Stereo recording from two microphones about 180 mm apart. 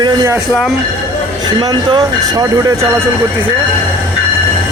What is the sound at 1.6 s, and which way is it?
Speech, 20° right (ahead or behind).